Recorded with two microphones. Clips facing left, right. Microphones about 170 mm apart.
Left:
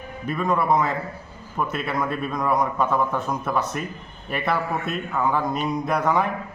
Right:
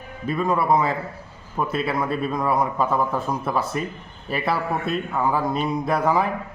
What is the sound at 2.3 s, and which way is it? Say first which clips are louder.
A man's voice: left 2 dB; 5° right (ahead or behind).